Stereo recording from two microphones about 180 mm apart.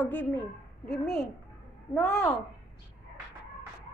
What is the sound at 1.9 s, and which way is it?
Speech, 10° left (ahead or behind).